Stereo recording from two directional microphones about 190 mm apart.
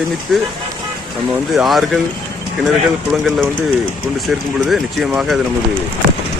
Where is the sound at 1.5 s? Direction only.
Centre (ahead or behind).